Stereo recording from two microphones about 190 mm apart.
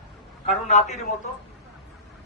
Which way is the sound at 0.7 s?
35° left (ahead or behind).